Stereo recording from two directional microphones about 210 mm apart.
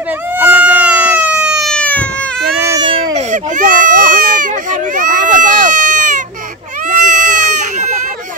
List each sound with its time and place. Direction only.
0.4 s cat: 10° right (ahead or behind)
2.7 s baby cry: 25° right (ahead or behind)